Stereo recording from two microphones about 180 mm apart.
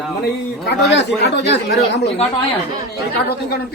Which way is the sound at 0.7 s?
70° left (ahead or behind).